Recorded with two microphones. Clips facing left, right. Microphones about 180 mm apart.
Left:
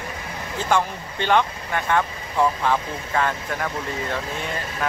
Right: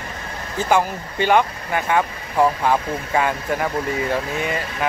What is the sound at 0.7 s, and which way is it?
Speech, 10° right (ahead or behind).